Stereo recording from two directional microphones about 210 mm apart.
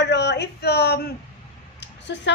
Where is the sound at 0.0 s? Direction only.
55° left (ahead or behind).